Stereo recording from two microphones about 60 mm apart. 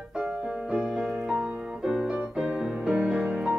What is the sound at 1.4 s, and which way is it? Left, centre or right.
Music, right.